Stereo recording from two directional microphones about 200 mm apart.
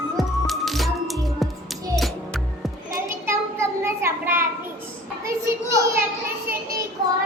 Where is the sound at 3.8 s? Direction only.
10° right (ahead or behind).